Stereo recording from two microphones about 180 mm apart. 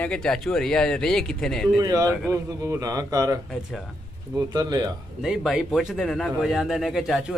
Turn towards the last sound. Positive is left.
turn(degrees=0)  # may be behind; listen again after turning